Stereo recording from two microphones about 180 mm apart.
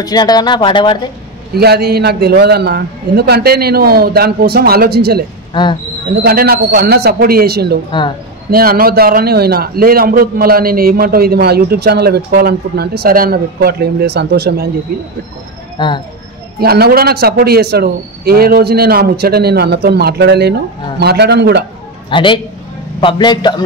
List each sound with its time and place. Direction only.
0.0 s speech: 20° left (ahead or behind)
1.5 s a man's voice: 65° right (ahead or behind)
5.5 s speech: 25° left (ahead or behind)
6.2 s a man's voice: 55° right (ahead or behind)
14.9 s a man's voice: 55° right (ahead or behind)
15.8 s speech: 25° left (ahead or behind)
16.5 s a man's voice: 60° right (ahead or behind)
22.1 s speech: 25° left (ahead or behind)